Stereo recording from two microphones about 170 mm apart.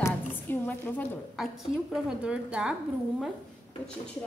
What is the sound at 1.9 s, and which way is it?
Speech, 5° right (ahead or behind).